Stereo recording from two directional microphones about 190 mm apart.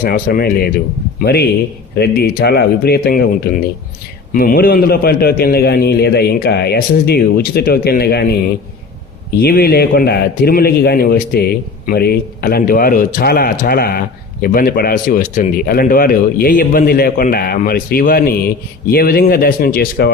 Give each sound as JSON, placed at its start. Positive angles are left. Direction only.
{"t": 0.0, "sound": "a man's voice", "side_deg": 50}
{"t": 9.4, "sound": "a man's voice", "side_deg": 55}